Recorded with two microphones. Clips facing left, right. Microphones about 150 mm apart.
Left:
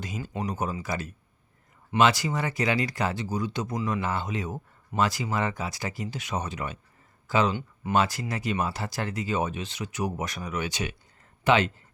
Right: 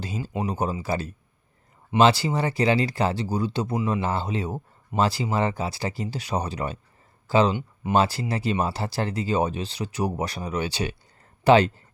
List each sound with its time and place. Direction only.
0.0 s speech: 30° right (ahead or behind)